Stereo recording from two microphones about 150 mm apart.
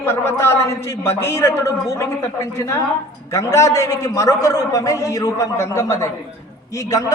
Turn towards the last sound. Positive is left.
turn(degrees=20)  # may be behind; listen again after turning